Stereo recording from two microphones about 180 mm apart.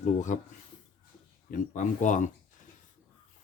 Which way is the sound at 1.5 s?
45° left (ahead or behind).